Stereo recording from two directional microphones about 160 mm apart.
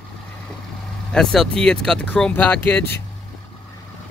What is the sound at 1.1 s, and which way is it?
Speech, 5° left (ahead or behind).